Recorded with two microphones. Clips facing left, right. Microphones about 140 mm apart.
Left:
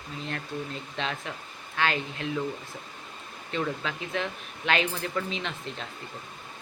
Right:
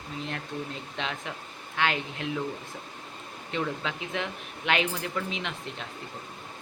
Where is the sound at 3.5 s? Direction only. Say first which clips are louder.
Even; 20° right (ahead or behind).